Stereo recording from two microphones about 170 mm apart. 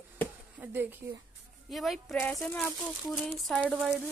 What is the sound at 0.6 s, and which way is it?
Speech, 10° right (ahead or behind).